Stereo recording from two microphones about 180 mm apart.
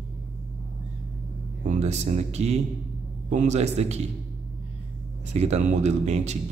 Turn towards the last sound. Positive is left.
turn(degrees=-40)  # may be behind; listen again after turning